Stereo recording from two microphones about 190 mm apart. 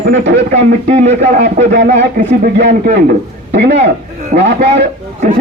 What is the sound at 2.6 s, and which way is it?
Speech, 60° right (ahead or behind).